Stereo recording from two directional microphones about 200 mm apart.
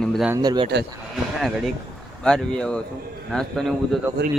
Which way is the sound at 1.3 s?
Centre (ahead or behind).